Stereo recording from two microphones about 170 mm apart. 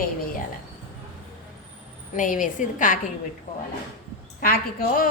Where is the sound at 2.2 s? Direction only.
50° left (ahead or behind).